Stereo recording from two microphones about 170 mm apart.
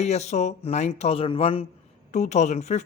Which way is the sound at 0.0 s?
40° left (ahead or behind).